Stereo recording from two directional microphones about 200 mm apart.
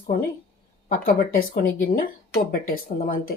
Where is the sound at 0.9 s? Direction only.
45° left (ahead or behind).